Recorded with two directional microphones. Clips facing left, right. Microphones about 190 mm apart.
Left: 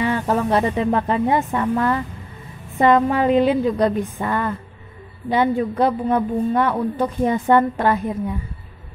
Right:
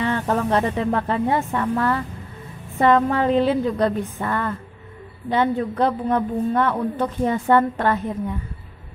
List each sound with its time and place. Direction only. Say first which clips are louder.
0.0 s a woman's voice: left 2 dB; 10° left (ahead or behind)